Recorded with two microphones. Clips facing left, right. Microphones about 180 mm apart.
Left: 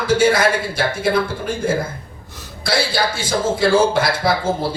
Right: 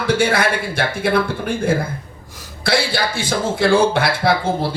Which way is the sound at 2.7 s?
55° right (ahead or behind).